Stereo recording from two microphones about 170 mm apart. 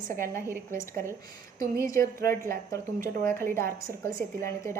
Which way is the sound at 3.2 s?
15° left (ahead or behind).